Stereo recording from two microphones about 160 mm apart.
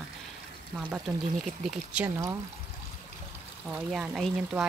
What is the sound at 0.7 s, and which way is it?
Speech, 5° right (ahead or behind).